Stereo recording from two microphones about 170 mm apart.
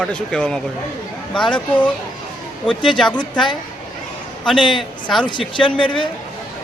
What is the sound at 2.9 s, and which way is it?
Speech, 5° left (ahead or behind).